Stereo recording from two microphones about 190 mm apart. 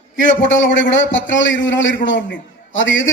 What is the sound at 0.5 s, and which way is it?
A man's voice, 75° left (ahead or behind).